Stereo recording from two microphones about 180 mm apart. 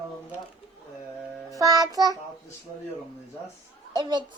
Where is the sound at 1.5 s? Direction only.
20° right (ahead or behind).